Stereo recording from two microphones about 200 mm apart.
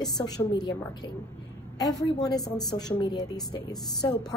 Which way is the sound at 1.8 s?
20° left (ahead or behind).